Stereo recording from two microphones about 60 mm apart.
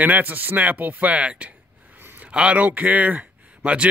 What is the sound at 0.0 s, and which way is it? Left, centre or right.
A man's voice, right.